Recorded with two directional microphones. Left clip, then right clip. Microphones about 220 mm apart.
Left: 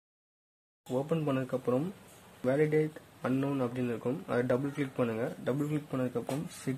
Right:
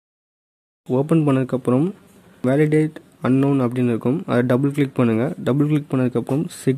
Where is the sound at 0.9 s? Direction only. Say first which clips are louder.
Right 13 dB; 45° right (ahead or behind).